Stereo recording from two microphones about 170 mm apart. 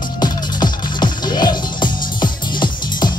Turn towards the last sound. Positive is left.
turn(degrees=25)  # may be behind; listen again after turning